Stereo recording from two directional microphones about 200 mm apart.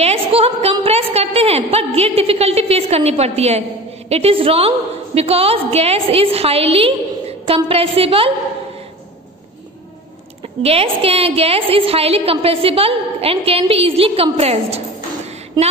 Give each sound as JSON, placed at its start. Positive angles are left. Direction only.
{"t": 0.0, "sound": "a woman's voice", "side_deg": -30}
{"t": 10.4, "sound": "a woman's voice", "side_deg": -30}